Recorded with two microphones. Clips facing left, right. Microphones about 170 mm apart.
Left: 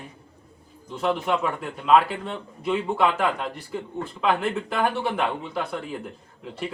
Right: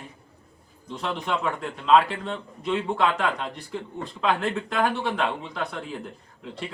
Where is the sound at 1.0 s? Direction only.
5° left (ahead or behind).